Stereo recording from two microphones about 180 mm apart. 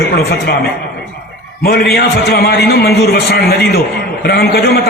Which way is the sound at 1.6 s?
65° left (ahead or behind).